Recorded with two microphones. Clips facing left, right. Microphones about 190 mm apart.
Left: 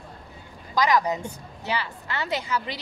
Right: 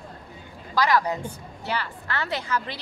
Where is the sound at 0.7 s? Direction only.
15° left (ahead or behind).